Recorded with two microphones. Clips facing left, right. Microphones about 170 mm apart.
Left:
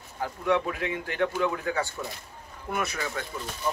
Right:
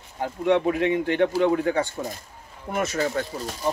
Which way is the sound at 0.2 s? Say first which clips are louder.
Right 5 dB; 25° right (ahead or behind).